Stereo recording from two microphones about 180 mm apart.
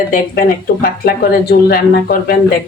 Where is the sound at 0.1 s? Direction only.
55° left (ahead or behind).